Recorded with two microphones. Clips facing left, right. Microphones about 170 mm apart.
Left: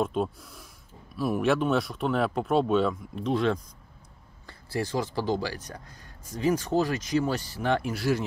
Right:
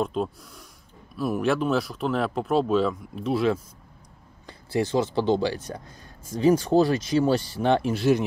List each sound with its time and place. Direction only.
0.0 s speech: centre (ahead or behind)
4.5 s speech: 20° right (ahead or behind)